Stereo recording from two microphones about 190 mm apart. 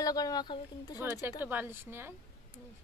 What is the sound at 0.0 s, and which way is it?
Speech, 20° left (ahead or behind).